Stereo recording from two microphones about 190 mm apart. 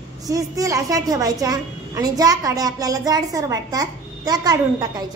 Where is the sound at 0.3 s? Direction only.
15° right (ahead or behind).